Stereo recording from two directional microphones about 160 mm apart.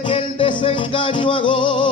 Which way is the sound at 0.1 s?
30° left (ahead or behind).